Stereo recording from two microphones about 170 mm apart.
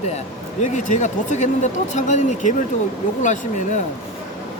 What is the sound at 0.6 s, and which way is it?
Speech, 45° left (ahead or behind).